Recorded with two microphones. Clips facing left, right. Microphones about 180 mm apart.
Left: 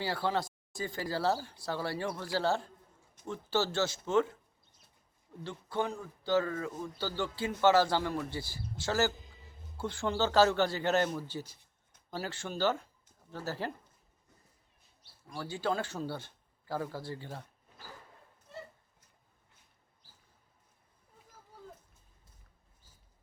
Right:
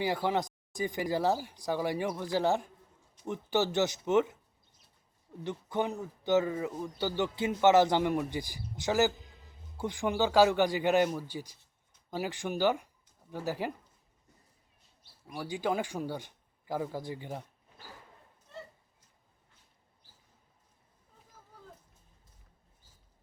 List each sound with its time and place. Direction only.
0.0 s a man's voice: 15° right (ahead or behind)
5.4 s a man's voice: 20° right (ahead or behind)
15.3 s speech: 15° right (ahead or behind)